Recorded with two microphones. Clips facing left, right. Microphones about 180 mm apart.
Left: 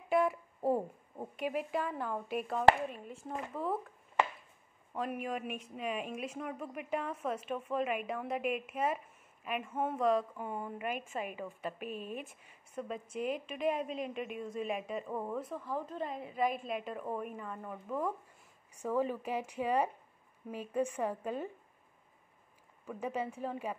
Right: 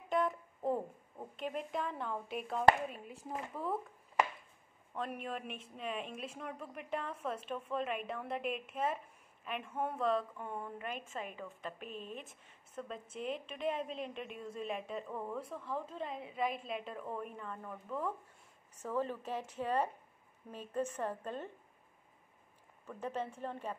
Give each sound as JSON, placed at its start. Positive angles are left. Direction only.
{"t": 0.1, "sound": "a woman's voice", "side_deg": 10}
{"t": 4.9, "sound": "a woman's voice", "side_deg": 5}
{"t": 15.0, "sound": "speech", "side_deg": 20}
{"t": 15.3, "sound": "a woman's voice", "side_deg": 0}
{"t": 22.8, "sound": "a woman's voice", "side_deg": 10}